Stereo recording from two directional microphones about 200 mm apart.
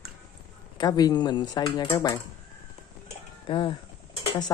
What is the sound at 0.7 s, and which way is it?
Speech, 20° left (ahead or behind).